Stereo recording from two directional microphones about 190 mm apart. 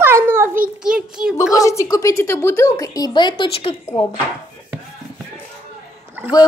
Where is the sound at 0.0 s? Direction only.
15° right (ahead or behind).